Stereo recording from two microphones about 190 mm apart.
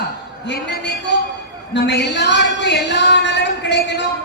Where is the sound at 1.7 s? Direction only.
65° left (ahead or behind).